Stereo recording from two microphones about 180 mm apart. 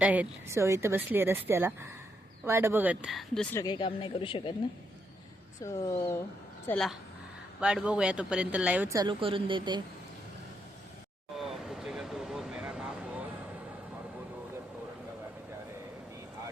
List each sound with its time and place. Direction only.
0.0 s a woman's voice: 10° right (ahead or behind)
3.5 s speech: 20° left (ahead or behind)
5.6 s speech: 15° left (ahead or behind)
6.7 s speech: 5° left (ahead or behind)
9.0 s speech: 30° right (ahead or behind)
11.3 s vehicle: centre (ahead or behind)